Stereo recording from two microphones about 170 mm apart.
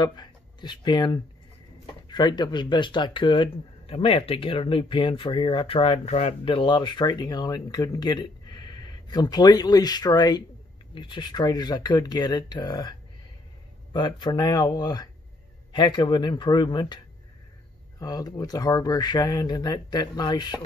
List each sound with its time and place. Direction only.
0.0 s speech: 25° left (ahead or behind)
13.9 s speech: 25° left (ahead or behind)